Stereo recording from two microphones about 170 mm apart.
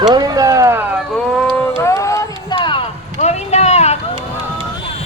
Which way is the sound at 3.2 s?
40° left (ahead or behind).